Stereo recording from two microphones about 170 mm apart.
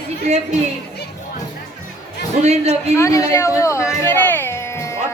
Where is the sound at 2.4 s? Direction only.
40° right (ahead or behind).